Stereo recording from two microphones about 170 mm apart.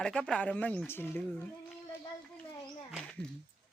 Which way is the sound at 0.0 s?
5° left (ahead or behind).